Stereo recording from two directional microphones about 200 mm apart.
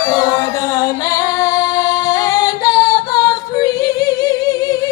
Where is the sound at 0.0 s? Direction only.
15° left (ahead or behind).